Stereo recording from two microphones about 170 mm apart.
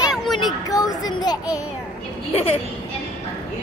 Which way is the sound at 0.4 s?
25° left (ahead or behind).